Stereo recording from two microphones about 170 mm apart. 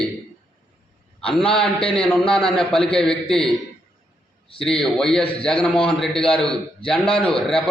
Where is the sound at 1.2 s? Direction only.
5° left (ahead or behind).